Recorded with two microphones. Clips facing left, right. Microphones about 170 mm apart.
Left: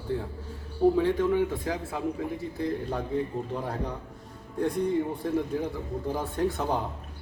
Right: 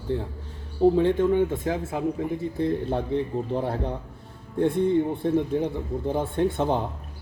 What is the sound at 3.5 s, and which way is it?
Speech, 30° right (ahead or behind).